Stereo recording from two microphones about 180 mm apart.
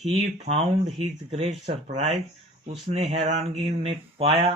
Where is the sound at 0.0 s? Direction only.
35° right (ahead or behind).